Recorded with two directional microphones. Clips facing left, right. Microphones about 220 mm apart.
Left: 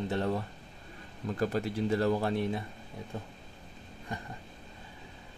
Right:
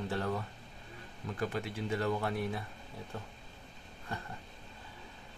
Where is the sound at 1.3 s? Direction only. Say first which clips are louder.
Left 6 dB; 40° left (ahead or behind); by 4.3 s 15° left (ahead or behind).